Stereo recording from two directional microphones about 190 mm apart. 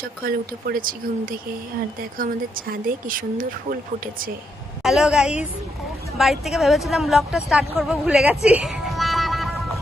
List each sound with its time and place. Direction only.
0.2 s speech: 50° right (ahead or behind)
4.8 s a woman's voice: centre (ahead or behind)